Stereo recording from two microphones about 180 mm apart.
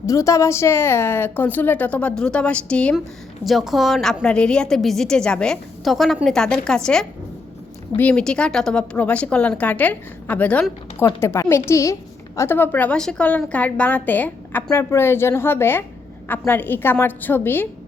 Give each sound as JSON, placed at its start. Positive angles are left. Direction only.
{"t": 0.0, "sound": "a woman's voice", "side_deg": 15}